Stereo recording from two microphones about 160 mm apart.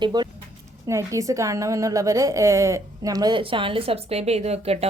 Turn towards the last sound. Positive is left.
turn(degrees=-40)  # may be behind; listen again after turning